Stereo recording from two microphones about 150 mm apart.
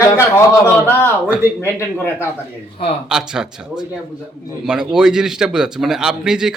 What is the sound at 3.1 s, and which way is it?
A man's voice, 5° right (ahead or behind).